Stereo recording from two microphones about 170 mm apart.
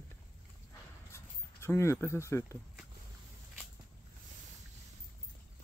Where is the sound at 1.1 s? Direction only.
15° left (ahead or behind).